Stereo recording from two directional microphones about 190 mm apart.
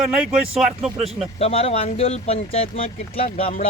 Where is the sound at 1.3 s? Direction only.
30° left (ahead or behind).